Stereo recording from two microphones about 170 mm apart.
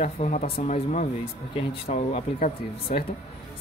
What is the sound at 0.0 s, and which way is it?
A woman's voice, 45° left (ahead or behind).